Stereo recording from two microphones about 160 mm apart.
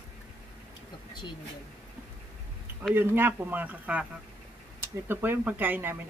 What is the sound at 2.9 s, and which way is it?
Speech, 15° right (ahead or behind).